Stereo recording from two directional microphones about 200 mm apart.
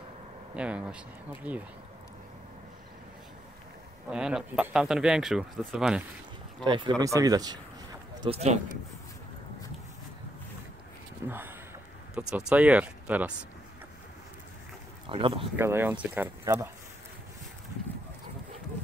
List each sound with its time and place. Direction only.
0.6 s speech: 5° right (ahead or behind)
4.1 s speech: 5° right (ahead or behind)
6.6 s speech: 25° right (ahead or behind)
8.2 s speech: 30° right (ahead or behind)
11.2 s speech: 10° right (ahead or behind)
15.0 s speech: 25° right (ahead or behind)
15.5 s speech: 10° right (ahead or behind)